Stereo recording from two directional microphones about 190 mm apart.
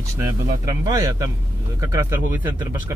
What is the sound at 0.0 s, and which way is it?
Speech, 20° right (ahead or behind).